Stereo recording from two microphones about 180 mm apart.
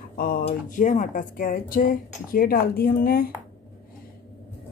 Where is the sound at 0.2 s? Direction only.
55° left (ahead or behind).